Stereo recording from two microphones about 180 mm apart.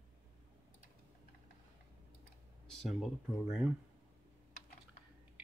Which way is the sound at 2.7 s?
Centre (ahead or behind).